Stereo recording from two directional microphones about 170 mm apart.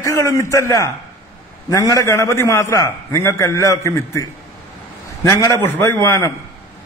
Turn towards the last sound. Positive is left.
turn(degrees=15)  # may be behind; listen again after turning